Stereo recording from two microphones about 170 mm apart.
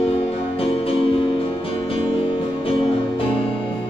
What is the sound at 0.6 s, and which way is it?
Music, 35° left (ahead or behind).